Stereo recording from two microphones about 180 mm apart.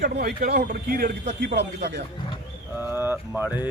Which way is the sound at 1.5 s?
70° right (ahead or behind).